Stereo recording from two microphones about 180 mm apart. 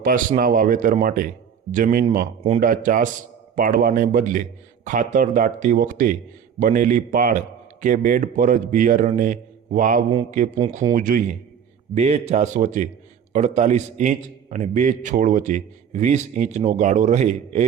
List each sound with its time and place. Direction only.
0.0 s a man's voice: 50° right (ahead or behind)